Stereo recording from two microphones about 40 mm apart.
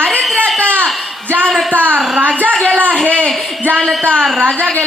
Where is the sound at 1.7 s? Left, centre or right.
Right.